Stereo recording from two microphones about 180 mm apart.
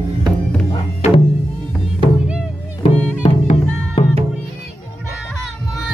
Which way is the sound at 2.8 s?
30° left (ahead or behind).